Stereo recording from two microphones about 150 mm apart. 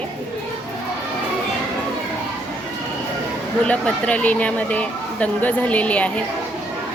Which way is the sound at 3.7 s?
10° left (ahead or behind).